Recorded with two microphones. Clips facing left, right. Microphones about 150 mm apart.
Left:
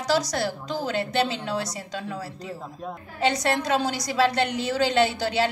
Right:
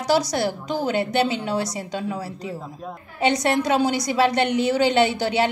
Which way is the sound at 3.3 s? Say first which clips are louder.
Right 4 dB; 10° right (ahead or behind).